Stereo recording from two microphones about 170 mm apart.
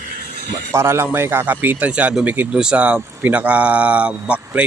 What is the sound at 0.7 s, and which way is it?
A man's voice, 15° right (ahead or behind).